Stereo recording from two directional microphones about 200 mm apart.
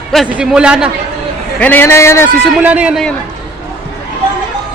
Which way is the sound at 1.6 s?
10° left (ahead or behind).